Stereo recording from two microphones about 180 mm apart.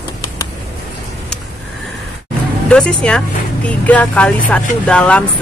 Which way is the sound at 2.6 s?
5° left (ahead or behind).